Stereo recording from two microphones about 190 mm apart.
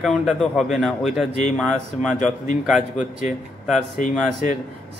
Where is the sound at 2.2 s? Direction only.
40° left (ahead or behind).